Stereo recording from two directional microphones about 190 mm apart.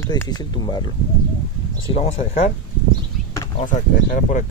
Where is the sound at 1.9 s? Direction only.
35° left (ahead or behind).